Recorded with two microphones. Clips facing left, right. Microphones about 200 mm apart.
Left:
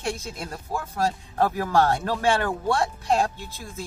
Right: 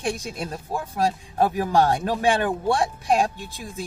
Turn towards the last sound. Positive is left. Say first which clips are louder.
# right 3 dB
turn(degrees=-15)  # may be behind; listen again after turning